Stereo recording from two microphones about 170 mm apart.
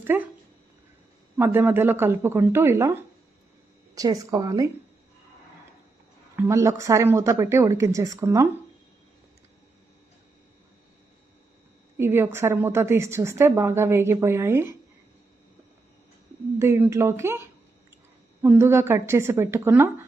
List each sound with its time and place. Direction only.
0.0 s speech: 10° right (ahead or behind)
1.4 s a woman's voice: 10° right (ahead or behind)
6.3 s a woman's voice: 15° right (ahead or behind)
11.9 s a woman's voice: 15° right (ahead or behind)
16.6 s a woman's voice: 15° right (ahead or behind)